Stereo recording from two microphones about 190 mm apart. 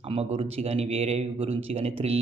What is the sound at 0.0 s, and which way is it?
A man's voice, 30° right (ahead or behind).